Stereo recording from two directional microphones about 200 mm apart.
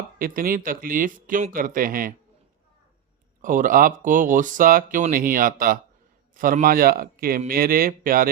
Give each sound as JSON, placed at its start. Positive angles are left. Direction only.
{"t": 0.2, "sound": "speech", "side_deg": -45}
{"t": 3.4, "sound": "speech", "side_deg": -40}